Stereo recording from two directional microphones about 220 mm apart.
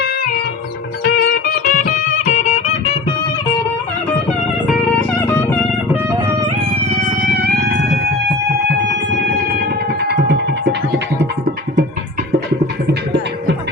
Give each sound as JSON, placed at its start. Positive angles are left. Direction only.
{"t": 1.0, "sound": "music", "side_deg": 45}
{"t": 5.2, "sound": "music", "side_deg": 10}
{"t": 5.9, "sound": "music", "side_deg": -15}
{"t": 7.2, "sound": "music", "side_deg": -40}
{"t": 12.9, "sound": "music", "side_deg": -50}